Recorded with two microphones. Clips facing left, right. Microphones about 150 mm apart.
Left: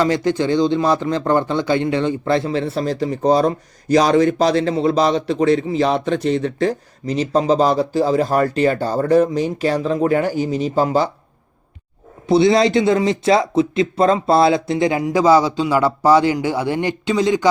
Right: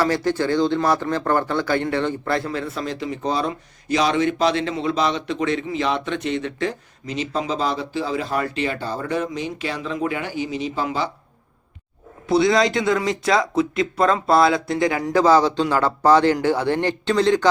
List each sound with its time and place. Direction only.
0.0 s a man's voice: 20° left (ahead or behind); by 11.1 s 40° left (ahead or behind)
12.3 s speech: 30° left (ahead or behind)
15.0 s a man's voice: 10° left (ahead or behind)